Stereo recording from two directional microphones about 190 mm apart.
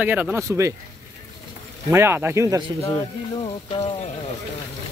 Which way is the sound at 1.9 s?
10° right (ahead or behind).